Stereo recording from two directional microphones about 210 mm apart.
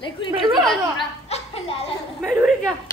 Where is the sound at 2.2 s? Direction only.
Centre (ahead or behind).